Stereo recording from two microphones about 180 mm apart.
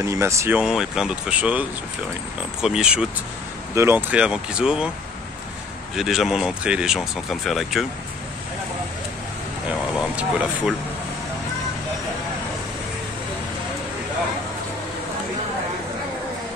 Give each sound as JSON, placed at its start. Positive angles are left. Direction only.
{"t": 0.0, "sound": "speech", "side_deg": -15}
{"t": 5.9, "sound": "speech", "side_deg": 0}
{"t": 9.9, "sound": "speech", "side_deg": -5}